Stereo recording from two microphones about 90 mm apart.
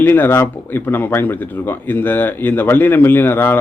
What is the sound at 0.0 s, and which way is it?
Speech, 25° left (ahead or behind).